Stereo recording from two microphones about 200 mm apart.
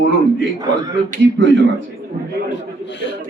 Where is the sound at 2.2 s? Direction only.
40° right (ahead or behind).